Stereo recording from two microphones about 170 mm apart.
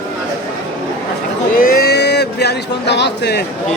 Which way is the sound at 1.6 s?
60° left (ahead or behind).